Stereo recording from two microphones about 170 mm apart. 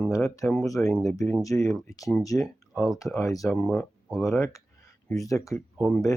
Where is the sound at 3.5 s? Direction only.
5° left (ahead or behind).